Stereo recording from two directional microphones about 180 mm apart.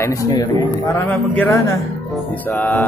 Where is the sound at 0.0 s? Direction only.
20° left (ahead or behind).